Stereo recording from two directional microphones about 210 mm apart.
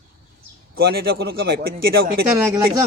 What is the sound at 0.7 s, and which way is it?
Speech, 50° right (ahead or behind).